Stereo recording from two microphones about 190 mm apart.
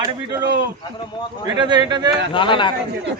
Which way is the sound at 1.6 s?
20° right (ahead or behind).